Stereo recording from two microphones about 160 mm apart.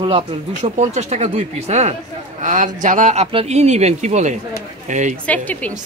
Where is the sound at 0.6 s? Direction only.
45° right (ahead or behind).